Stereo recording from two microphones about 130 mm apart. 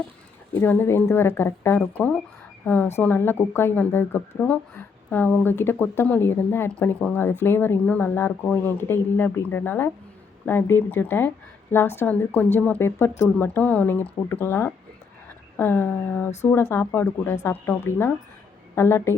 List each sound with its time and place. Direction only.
0.6 s a woman's voice: 15° left (ahead or behind)